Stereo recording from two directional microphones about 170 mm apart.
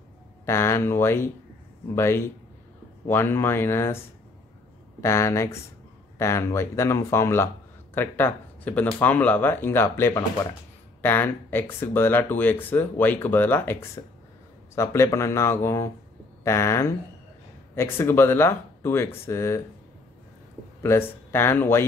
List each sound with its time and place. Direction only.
0.5 s speech: 15° left (ahead or behind)
5.0 s speech: 15° left (ahead or behind)
20.8 s speech: 15° left (ahead or behind)